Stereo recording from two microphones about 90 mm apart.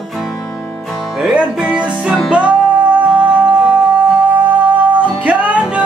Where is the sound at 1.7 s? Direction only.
10° right (ahead or behind).